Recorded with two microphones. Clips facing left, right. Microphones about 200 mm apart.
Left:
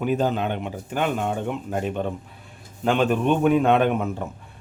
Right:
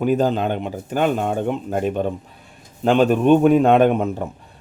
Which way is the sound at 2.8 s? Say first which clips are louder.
Right 5 dB; 40° right (ahead or behind).